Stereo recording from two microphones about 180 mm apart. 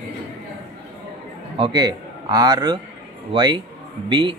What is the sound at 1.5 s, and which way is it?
A man's voice, 25° right (ahead or behind).